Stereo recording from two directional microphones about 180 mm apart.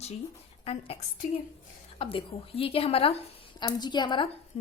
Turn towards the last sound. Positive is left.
turn(degrees=35)  # may be behind; listen again after turning